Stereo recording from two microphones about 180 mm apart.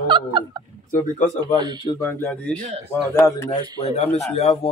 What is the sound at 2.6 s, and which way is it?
Speech, 40° right (ahead or behind).